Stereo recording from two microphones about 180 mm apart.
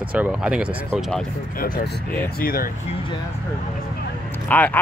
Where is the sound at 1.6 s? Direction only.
50° left (ahead or behind).